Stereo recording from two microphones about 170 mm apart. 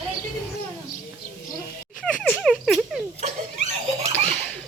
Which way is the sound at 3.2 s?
45° right (ahead or behind).